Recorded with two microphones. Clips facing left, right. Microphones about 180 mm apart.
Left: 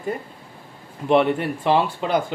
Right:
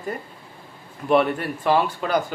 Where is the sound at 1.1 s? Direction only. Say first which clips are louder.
Left 2 dB; 20° left (ahead or behind).